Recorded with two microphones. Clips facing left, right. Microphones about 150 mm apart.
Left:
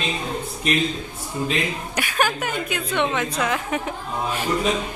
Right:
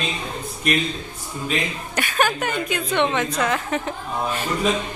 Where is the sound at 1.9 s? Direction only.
5° left (ahead or behind).